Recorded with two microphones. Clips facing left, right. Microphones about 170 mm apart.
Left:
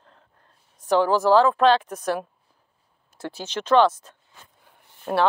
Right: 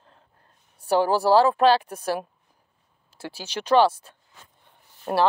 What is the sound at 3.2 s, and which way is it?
Speech, 10° right (ahead or behind).